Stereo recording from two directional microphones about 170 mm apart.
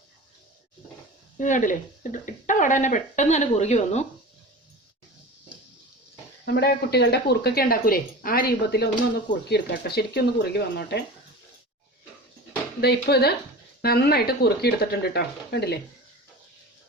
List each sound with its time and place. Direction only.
1.4 s speech: 50° left (ahead or behind)
6.4 s speech: 75° left (ahead or behind)
12.8 s speech: 70° left (ahead or behind)